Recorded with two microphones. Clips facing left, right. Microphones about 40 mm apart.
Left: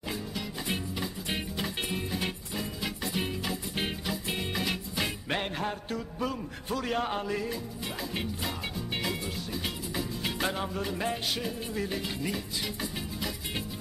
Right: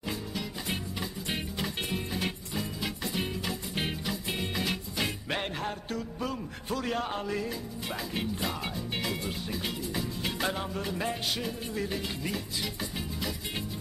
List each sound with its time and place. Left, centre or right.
0.3 s music: centre
5.4 s a man's voice: centre
8.1 s music: centre